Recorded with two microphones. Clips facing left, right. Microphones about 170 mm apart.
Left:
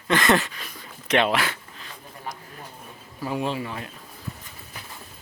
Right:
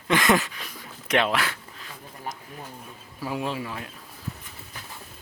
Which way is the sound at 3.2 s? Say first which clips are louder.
Left 2 dB; centre (ahead or behind).